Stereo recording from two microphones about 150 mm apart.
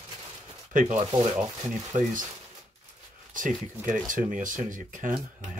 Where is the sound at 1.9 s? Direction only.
60° right (ahead or behind).